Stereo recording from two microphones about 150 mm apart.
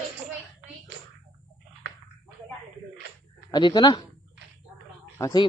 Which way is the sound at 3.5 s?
30° left (ahead or behind).